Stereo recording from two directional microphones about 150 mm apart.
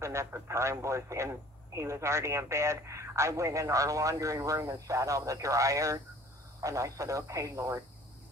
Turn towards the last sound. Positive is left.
turn(degrees=-20)  # may be behind; listen again after turning